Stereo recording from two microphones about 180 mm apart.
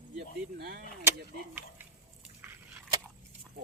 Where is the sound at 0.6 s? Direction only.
60° right (ahead or behind).